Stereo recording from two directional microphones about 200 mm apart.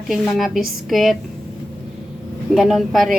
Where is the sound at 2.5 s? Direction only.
Centre (ahead or behind).